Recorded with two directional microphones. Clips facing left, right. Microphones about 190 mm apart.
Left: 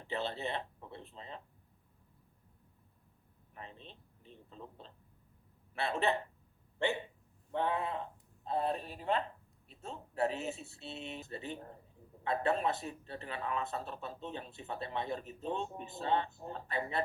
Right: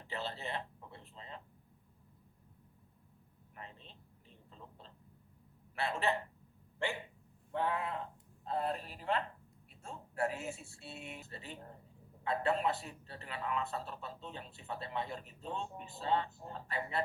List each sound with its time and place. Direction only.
0.1 s speech: 20° left (ahead or behind)
5.7 s speech: 20° left (ahead or behind)
9.6 s a sound: 20° left (ahead or behind)
10.8 s speech: 20° left (ahead or behind)